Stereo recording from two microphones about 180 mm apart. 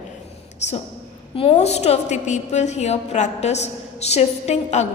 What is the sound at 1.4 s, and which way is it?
A woman's voice, 35° left (ahead or behind).